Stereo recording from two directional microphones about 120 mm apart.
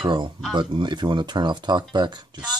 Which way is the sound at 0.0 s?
40° right (ahead or behind).